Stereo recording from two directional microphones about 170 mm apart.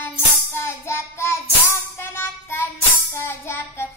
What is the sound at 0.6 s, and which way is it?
Child singing, 15° left (ahead or behind).